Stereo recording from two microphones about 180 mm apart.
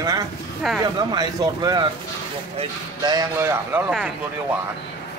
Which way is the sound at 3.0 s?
20° right (ahead or behind).